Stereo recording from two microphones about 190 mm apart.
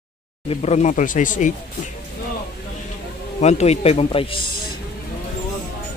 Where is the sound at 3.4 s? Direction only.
35° left (ahead or behind).